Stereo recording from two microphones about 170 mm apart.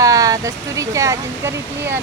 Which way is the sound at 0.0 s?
20° right (ahead or behind).